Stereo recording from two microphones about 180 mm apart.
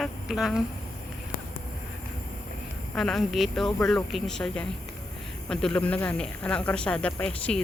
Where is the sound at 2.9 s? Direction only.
Centre (ahead or behind).